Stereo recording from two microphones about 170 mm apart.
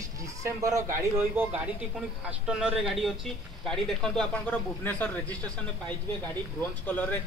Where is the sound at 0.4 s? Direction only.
20° right (ahead or behind).